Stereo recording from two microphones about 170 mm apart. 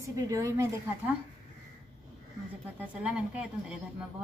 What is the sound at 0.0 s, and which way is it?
Speech, 20° right (ahead or behind).